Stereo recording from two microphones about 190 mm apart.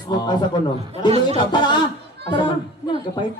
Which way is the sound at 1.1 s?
30° right (ahead or behind).